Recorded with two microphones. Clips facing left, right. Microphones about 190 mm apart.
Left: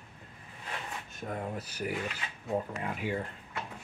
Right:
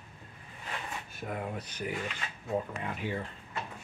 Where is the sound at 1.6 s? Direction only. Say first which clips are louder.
Left 1 dB; 5° left (ahead or behind).